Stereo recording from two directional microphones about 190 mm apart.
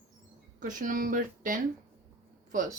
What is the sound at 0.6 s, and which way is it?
Speech, 45° right (ahead or behind).